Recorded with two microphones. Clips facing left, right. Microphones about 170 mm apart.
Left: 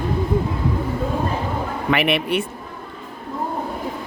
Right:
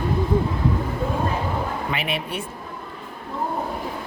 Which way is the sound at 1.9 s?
70° left (ahead or behind).